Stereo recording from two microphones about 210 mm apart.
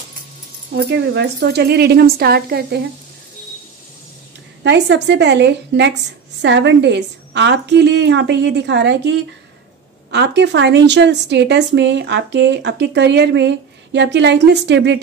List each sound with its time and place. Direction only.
0.8 s a woman's voice: 50° right (ahead or behind)
4.6 s a woman's voice: 55° right (ahead or behind)
10.1 s a woman's voice: 55° right (ahead or behind)